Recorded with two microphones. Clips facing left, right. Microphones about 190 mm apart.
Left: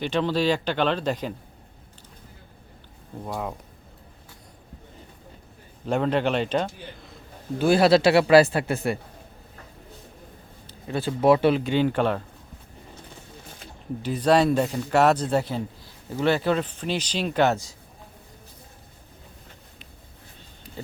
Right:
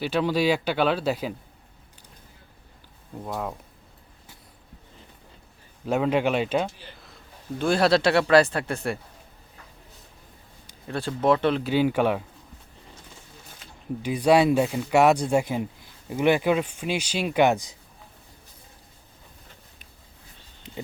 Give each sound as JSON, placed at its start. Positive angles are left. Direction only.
{"t": 0.0, "sound": "speech", "side_deg": -10}
{"t": 3.2, "sound": "speech", "side_deg": 0}
{"t": 5.8, "sound": "a man's voice", "side_deg": -5}
{"t": 10.8, "sound": "speech", "side_deg": 5}
{"t": 11.6, "sound": "speech", "side_deg": -5}
{"t": 14.0, "sound": "speech", "side_deg": -10}
{"t": 20.7, "sound": "a sound", "side_deg": -20}